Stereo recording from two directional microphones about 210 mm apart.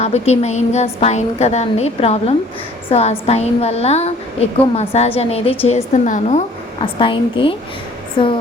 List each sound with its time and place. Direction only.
0.0 s a woman's voice: 30° left (ahead or behind)